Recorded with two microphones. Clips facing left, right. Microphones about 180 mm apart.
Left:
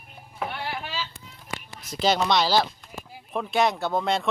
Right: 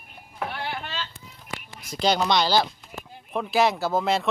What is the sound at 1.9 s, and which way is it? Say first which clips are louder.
Speech: even; centre (ahead or behind).